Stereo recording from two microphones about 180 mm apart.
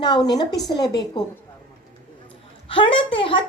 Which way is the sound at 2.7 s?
30° left (ahead or behind).